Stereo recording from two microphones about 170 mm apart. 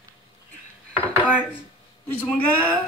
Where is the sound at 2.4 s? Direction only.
10° left (ahead or behind).